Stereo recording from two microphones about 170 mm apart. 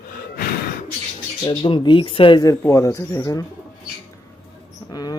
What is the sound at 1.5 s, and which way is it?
Speech, 30° left (ahead or behind).